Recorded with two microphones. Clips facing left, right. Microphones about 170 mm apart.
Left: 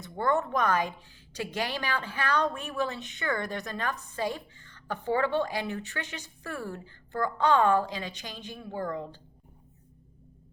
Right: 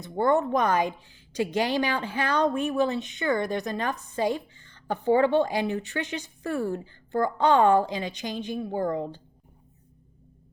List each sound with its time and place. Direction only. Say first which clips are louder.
0.0 s a woman's voice: right 5 dB; 20° right (ahead or behind)